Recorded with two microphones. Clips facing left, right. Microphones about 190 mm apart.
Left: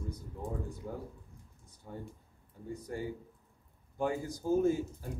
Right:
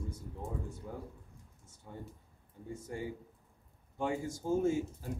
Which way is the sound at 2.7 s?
25° right (ahead or behind).